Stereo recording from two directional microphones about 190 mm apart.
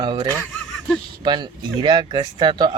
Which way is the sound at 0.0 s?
25° right (ahead or behind).